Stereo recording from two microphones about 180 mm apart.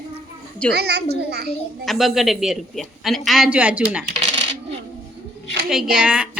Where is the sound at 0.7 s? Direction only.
65° right (ahead or behind).